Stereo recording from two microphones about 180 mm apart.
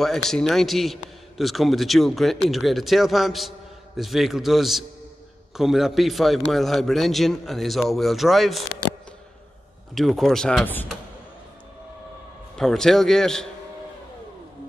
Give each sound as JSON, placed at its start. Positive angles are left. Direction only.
{"t": 0.0, "sound": "a man's voice", "side_deg": 0}
{"t": 9.9, "sound": "a man's voice", "side_deg": 0}
{"t": 12.5, "sound": "a man's voice", "side_deg": 5}